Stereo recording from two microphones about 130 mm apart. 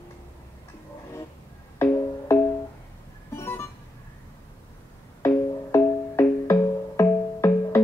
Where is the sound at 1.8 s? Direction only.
20° left (ahead or behind).